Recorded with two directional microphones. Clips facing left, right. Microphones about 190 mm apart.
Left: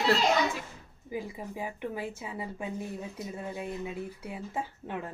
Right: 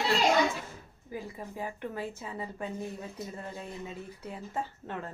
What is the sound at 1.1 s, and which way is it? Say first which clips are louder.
Speech: left 3 dB; 15° left (ahead or behind).